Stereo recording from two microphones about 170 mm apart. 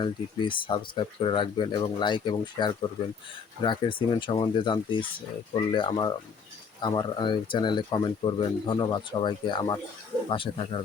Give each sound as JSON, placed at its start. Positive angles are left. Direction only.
{"t": 0.0, "sound": "speech", "side_deg": 30}